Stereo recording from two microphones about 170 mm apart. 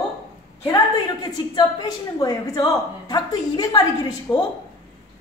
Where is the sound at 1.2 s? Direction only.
25° left (ahead or behind).